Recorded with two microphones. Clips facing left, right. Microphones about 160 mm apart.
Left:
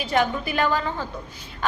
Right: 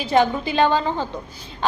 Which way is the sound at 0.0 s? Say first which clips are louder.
Right 4 dB; 30° right (ahead or behind).